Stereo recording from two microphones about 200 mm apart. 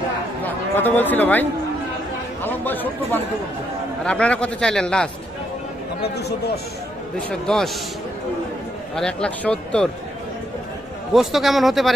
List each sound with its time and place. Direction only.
0.4 s a man's voice: 10° left (ahead or behind)
6.1 s a man's voice: 55° left (ahead or behind)
7.2 s a man's voice: 5° left (ahead or behind)
8.9 s a man's voice: 5° left (ahead or behind)
11.1 s a man's voice: centre (ahead or behind)